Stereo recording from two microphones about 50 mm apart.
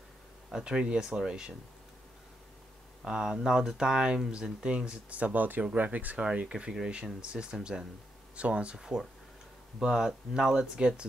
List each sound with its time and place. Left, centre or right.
0.5 s speech: centre
3.0 s speech: centre; by 6.2 s right
6.2 s speech: centre
8.7 s speech: centre